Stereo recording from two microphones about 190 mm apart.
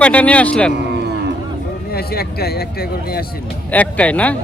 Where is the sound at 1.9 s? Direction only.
55° left (ahead or behind).